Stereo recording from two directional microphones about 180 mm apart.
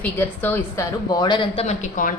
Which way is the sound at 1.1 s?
25° left (ahead or behind).